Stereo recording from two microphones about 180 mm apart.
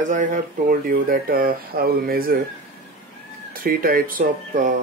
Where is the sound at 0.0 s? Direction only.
45° right (ahead or behind).